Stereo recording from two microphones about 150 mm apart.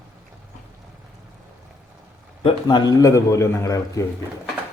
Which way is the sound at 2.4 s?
30° left (ahead or behind).